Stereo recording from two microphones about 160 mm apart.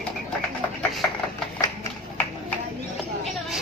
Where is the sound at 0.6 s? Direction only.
10° left (ahead or behind).